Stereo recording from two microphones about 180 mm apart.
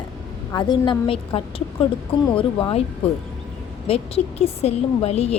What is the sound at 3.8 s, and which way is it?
Speech, 35° left (ahead or behind).